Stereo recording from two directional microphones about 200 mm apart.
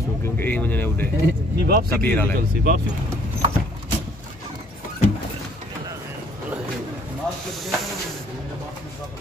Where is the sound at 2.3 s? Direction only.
50° right (ahead or behind).